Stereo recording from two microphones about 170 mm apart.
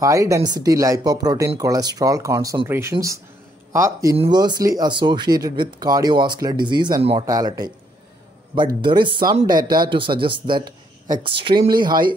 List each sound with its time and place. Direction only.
0.0 s speech: 20° right (ahead or behind)